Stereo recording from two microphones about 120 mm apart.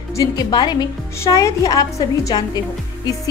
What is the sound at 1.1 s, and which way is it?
A woman's voice, 25° left (ahead or behind).